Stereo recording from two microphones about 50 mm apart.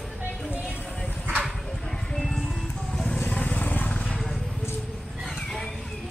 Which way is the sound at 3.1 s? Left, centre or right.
Left.